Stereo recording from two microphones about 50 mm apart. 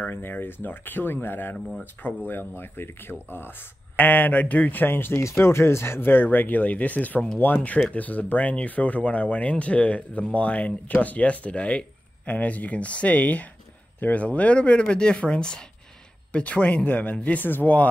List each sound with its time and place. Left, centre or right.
0.1 s speech: left
5.2 s speech: left